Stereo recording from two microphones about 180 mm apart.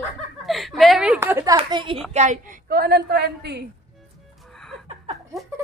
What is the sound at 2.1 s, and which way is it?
A woman's voice, 40° right (ahead or behind).